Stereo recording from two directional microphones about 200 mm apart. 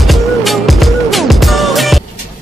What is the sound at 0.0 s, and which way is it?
Music, centre (ahead or behind).